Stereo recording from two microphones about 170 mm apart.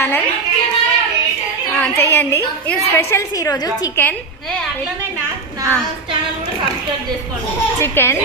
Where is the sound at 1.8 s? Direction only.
15° left (ahead or behind).